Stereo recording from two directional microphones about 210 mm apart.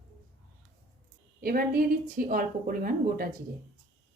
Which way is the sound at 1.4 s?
45° right (ahead or behind).